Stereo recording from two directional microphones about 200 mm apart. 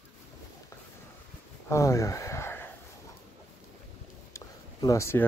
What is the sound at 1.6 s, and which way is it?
Speech, 15° left (ahead or behind).